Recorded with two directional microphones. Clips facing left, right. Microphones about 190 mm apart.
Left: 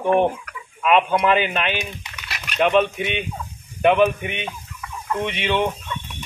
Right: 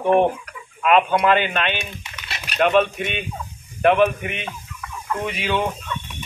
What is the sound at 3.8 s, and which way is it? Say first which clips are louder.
Fowl: even; centre (ahead or behind).